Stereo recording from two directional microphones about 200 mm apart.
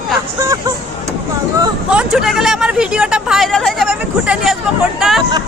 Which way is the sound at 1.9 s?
5° right (ahead or behind).